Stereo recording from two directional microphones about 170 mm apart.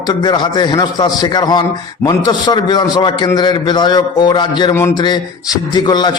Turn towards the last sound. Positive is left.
turn(degrees=25)  # may be behind; listen again after turning